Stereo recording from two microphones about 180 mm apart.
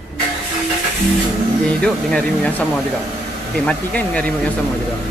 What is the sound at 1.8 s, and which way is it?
Speech, 5° left (ahead or behind).